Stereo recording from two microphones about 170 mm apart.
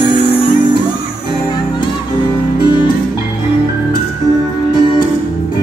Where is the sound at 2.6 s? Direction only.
25° left (ahead or behind).